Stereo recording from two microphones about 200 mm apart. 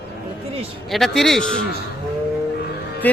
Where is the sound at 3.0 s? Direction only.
10° left (ahead or behind).